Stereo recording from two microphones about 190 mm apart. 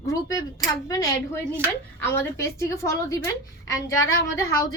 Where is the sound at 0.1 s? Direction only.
20° left (ahead or behind).